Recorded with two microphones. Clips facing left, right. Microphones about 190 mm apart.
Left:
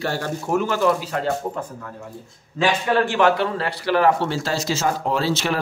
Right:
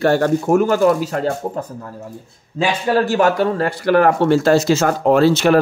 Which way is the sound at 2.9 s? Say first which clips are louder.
Right 4 dB; 40° right (ahead or behind).